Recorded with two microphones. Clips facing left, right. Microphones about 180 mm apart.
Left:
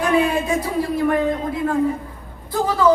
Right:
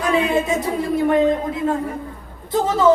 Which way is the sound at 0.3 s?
20° right (ahead or behind).